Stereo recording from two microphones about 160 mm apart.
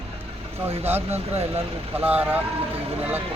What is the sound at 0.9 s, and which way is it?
Speech, 15° right (ahead or behind).